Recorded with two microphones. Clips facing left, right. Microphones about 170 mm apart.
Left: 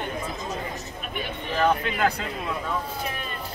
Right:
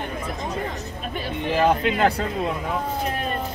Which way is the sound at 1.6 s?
20° right (ahead or behind).